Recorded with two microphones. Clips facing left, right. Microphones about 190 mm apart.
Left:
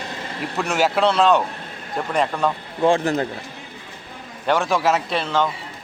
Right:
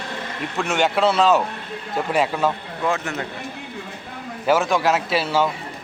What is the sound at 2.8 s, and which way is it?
Speech, 30° left (ahead or behind).